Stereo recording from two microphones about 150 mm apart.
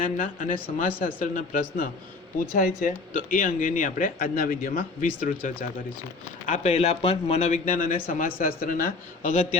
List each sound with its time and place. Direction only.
0.0 s speech: 60° left (ahead or behind)
6.4 s a woman's voice: 50° left (ahead or behind)